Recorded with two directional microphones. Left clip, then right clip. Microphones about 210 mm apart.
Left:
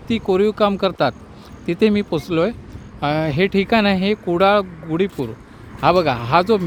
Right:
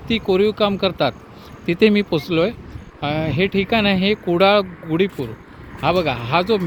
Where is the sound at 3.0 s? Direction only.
15° left (ahead or behind); by 5.0 s centre (ahead or behind).